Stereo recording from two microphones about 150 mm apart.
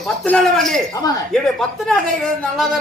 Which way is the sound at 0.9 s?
25° left (ahead or behind).